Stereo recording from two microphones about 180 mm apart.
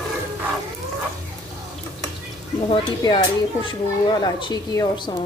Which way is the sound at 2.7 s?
25° left (ahead or behind).